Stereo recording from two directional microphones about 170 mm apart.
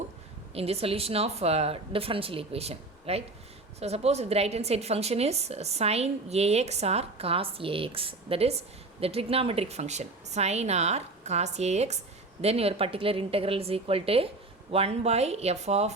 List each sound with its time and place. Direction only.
0.5 s a woman's voice: 35° right (ahead or behind)